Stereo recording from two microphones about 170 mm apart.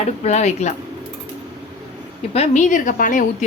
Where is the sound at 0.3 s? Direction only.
40° left (ahead or behind).